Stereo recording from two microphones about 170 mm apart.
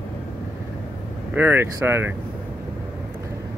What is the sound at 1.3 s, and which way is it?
Speech, 10° right (ahead or behind).